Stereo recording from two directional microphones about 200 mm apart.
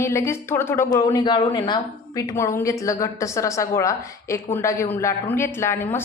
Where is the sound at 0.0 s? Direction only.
10° left (ahead or behind).